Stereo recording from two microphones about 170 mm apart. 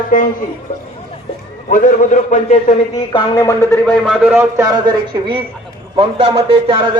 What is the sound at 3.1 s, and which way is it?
Speech, 20° left (ahead or behind).